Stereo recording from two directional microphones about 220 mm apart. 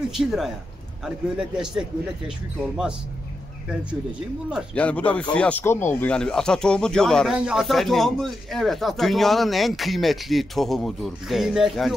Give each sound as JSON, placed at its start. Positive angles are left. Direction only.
{"t": 0.2, "sound": "speech", "side_deg": 0}
{"t": 4.5, "sound": "speech", "side_deg": 0}